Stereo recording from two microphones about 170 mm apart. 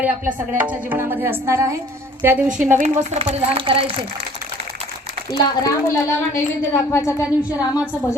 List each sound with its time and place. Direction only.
0.5 s speech: 10° right (ahead or behind)
2.7 s speech: 45° right (ahead or behind)
5.3 s a woman's voice: 15° left (ahead or behind)